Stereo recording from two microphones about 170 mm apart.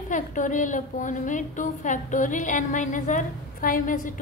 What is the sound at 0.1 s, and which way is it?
A woman's voice, 50° left (ahead or behind).